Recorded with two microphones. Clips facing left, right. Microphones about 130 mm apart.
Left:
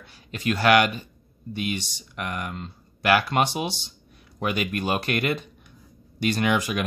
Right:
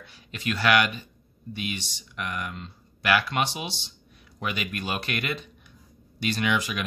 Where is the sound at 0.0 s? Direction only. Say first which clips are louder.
Left 4 dB; 40° left (ahead or behind).